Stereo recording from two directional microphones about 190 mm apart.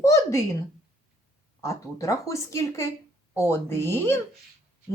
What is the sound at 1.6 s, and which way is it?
Speech, 15° left (ahead or behind).